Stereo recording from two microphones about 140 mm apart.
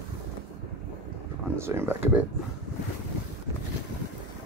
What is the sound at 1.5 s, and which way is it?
Speech, 20° right (ahead or behind).